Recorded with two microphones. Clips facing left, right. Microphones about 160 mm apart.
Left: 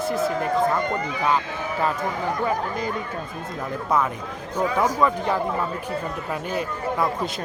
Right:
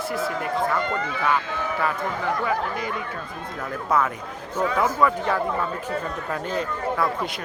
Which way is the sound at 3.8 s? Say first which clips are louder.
Even; 15° left (ahead or behind).